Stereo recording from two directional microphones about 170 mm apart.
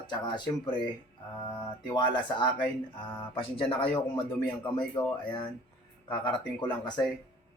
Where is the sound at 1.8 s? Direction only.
25° left (ahead or behind).